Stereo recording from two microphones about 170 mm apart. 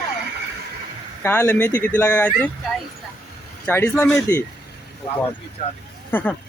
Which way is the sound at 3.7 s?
10° left (ahead or behind).